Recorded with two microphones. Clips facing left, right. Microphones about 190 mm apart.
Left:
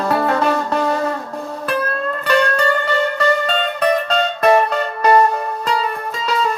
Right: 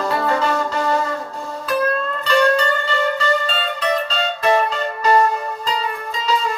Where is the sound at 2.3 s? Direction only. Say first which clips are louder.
Even; 60° left (ahead or behind).